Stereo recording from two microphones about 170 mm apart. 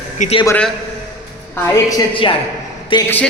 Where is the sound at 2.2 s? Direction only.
30° left (ahead or behind).